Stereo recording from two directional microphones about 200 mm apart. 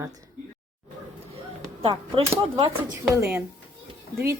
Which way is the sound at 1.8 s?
30° right (ahead or behind).